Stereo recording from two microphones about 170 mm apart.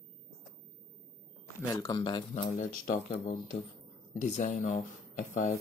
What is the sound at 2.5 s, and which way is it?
Speech, 50° left (ahead or behind).